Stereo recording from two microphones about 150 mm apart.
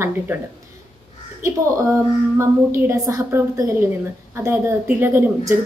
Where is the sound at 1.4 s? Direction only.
20° right (ahead or behind).